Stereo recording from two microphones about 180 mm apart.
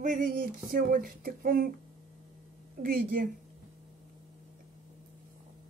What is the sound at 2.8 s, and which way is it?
Speech, 55° right (ahead or behind).